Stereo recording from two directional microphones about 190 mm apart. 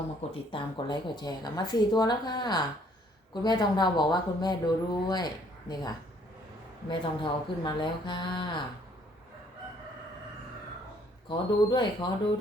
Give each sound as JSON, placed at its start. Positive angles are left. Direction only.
{"t": 0.3, "sound": "speech", "side_deg": 25}
{"t": 6.9, "sound": "speech", "side_deg": 25}
{"t": 11.3, "sound": "speech", "side_deg": 25}